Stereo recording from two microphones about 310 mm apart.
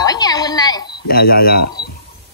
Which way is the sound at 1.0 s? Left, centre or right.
Left.